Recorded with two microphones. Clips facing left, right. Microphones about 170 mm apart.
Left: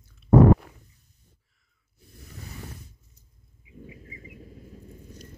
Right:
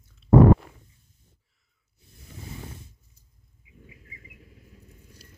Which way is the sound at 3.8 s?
30° left (ahead or behind).